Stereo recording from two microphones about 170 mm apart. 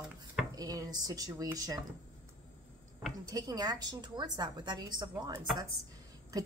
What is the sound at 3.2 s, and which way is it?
Speech, 20° right (ahead or behind).